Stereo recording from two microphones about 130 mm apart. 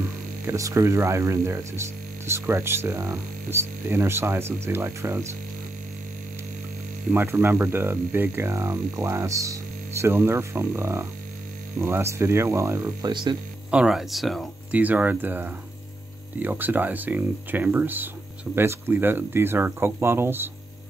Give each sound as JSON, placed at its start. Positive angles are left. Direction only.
{"t": 0.5, "sound": "speech", "side_deg": -25}
{"t": 7.1, "sound": "speech", "side_deg": -20}
{"t": 13.1, "sound": "speech", "side_deg": -35}
{"t": 13.7, "sound": "speech", "side_deg": -5}
{"t": 14.7, "sound": "speech", "side_deg": -10}